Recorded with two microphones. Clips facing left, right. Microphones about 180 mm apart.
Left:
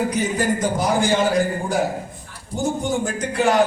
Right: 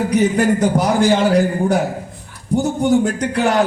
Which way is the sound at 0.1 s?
65° right (ahead or behind).